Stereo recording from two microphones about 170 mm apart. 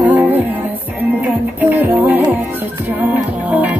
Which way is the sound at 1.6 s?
10° right (ahead or behind).